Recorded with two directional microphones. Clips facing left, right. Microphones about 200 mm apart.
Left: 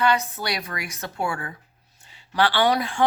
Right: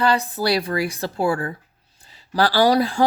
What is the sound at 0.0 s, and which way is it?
Speech, 35° right (ahead or behind).